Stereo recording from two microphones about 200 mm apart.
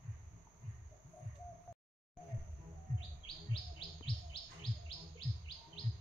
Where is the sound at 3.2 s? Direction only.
25° left (ahead or behind).